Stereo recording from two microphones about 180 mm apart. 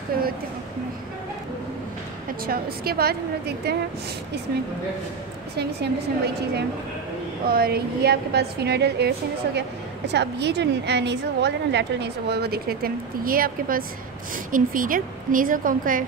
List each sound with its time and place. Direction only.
2.4 s a woman's voice: 55° right (ahead or behind)
5.6 s a woman's voice: 65° right (ahead or behind); by 16.1 s 50° right (ahead or behind)